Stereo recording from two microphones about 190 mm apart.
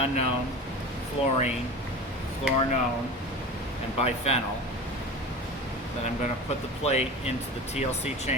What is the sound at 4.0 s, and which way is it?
Speech, 35° left (ahead or behind).